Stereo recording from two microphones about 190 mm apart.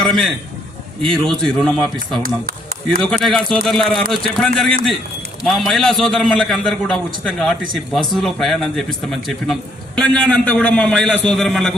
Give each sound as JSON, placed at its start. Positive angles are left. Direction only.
{"t": 0.0, "sound": "a man's voice", "side_deg": 5}